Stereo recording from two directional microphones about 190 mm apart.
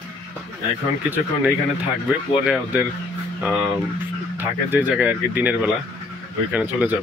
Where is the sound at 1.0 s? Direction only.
10° right (ahead or behind).